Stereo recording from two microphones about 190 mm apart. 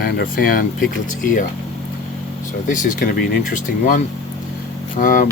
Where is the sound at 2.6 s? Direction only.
40° left (ahead or behind).